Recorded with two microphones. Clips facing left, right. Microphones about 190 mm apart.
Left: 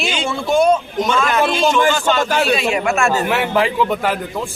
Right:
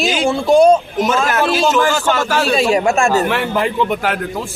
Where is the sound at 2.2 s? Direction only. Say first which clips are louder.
Even; 20° left (ahead or behind).